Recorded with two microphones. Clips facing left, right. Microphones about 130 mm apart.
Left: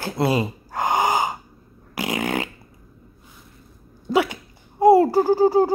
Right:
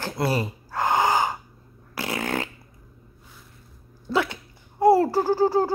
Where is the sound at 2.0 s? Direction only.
15° left (ahead or behind).